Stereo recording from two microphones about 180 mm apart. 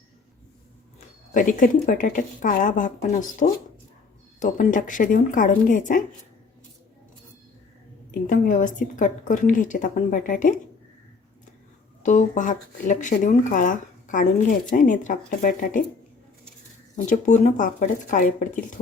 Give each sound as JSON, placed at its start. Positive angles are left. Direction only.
{"t": 0.9, "sound": "speech", "side_deg": 45}
{"t": 8.3, "sound": "speech", "side_deg": 45}
{"t": 12.0, "sound": "speech", "side_deg": 45}
{"t": 17.1, "sound": "speech", "side_deg": 40}